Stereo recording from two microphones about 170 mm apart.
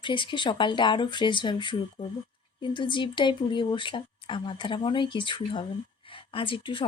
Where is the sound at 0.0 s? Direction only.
30° left (ahead or behind).